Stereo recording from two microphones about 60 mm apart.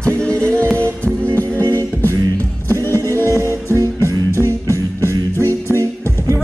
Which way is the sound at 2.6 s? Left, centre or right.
Left.